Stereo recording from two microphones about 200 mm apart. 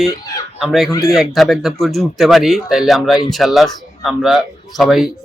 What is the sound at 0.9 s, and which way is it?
Speech, 15° left (ahead or behind).